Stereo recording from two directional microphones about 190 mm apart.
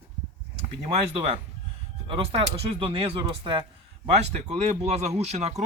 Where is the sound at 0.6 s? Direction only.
30° right (ahead or behind).